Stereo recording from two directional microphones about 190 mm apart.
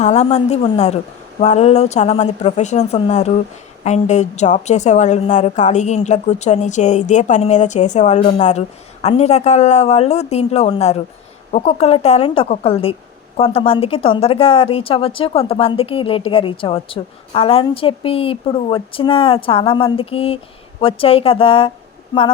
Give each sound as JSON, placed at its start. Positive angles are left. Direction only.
{"t": 0.0, "sound": "a woman's voice", "side_deg": 35}